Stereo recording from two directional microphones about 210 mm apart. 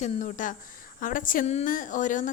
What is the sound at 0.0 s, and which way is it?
A woman's voice, 35° left (ahead or behind).